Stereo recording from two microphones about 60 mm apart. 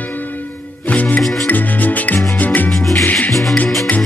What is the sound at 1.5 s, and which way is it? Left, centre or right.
Music, left.